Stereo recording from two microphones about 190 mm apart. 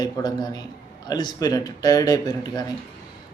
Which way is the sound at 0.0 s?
20° left (ahead or behind).